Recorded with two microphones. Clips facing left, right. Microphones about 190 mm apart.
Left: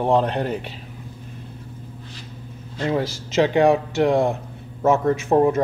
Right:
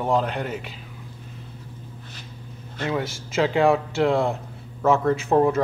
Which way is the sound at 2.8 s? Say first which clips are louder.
Left 4 dB; 30° left (ahead or behind).